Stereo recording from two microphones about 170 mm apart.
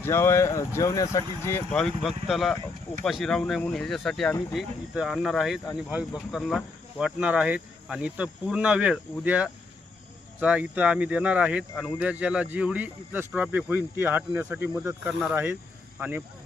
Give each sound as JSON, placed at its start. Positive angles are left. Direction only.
{"t": 0.0, "sound": "speech", "side_deg": 15}
{"t": 1.7, "sound": "speech", "side_deg": 0}